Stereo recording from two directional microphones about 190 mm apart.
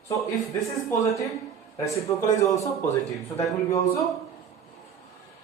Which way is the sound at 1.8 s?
15° left (ahead or behind).